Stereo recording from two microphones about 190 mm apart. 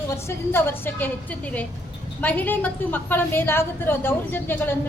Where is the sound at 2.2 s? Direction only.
10° left (ahead or behind).